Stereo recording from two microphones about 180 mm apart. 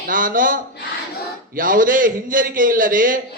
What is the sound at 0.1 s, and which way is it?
A man's voice, 50° right (ahead or behind).